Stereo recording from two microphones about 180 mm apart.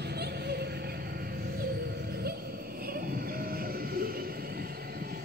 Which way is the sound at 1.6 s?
55° right (ahead or behind).